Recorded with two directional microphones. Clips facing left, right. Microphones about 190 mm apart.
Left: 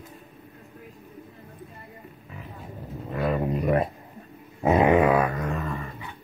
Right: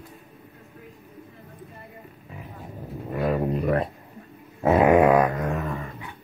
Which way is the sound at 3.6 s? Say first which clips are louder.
Left 3 dB; 10° left (ahead or behind).